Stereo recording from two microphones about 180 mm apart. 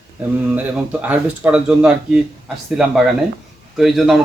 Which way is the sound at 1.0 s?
10° right (ahead or behind).